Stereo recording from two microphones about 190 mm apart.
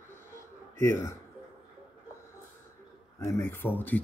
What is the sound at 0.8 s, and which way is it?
Speech, 15° left (ahead or behind).